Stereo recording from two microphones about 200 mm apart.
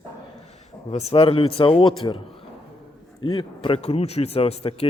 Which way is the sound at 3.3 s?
25° left (ahead or behind).